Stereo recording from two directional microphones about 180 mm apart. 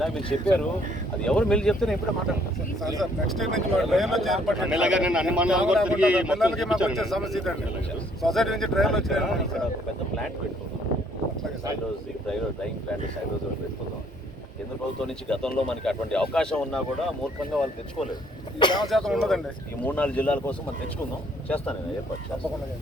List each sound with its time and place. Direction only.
0.3 s speech: 5° left (ahead or behind)
3.0 s speech: centre (ahead or behind)
15.0 s speech: 5° left (ahead or behind)
18.6 s speech: 25° left (ahead or behind)
18.9 s speech: centre (ahead or behind)